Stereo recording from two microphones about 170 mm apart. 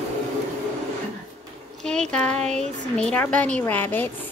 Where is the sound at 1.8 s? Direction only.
5° left (ahead or behind).